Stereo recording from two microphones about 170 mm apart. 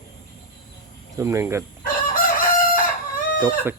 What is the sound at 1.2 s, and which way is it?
Speech, 15° right (ahead or behind).